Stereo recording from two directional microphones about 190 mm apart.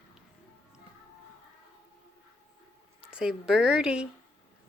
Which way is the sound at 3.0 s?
5° right (ahead or behind).